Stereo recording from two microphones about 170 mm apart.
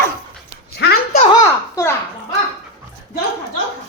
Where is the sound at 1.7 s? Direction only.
15° left (ahead or behind).